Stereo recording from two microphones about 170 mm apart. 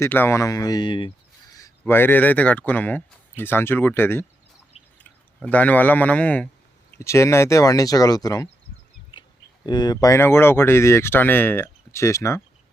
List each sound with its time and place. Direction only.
0.0 s speech: 15° left (ahead or behind)
1.8 s speech: 10° left (ahead or behind)
5.4 s speech: 10° left (ahead or behind)
9.1 s a sound: 30° left (ahead or behind)
9.6 s speech: 25° left (ahead or behind)